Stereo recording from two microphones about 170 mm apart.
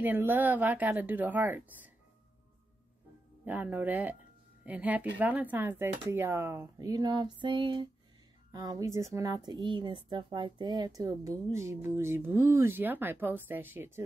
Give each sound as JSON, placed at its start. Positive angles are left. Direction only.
{"t": 0.0, "sound": "speech", "side_deg": -10}
{"t": 3.4, "sound": "speech", "side_deg": -10}